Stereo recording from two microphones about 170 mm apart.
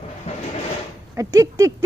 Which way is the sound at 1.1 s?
20° right (ahead or behind).